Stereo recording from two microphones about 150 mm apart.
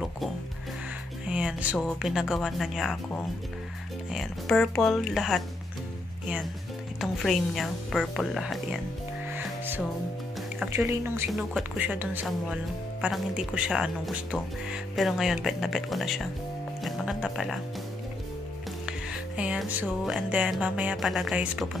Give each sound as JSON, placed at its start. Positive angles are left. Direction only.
{"t": 1.3, "sound": "music", "side_deg": -10}
{"t": 1.9, "sound": "speech", "side_deg": -5}
{"t": 4.1, "sound": "speech", "side_deg": 0}
{"t": 7.0, "sound": "speech", "side_deg": 0}
{"t": 9.3, "sound": "music", "side_deg": -10}
{"t": 10.9, "sound": "speech", "side_deg": -15}
{"t": 11.3, "sound": "speech", "side_deg": -5}
{"t": 18.9, "sound": "speech", "side_deg": -10}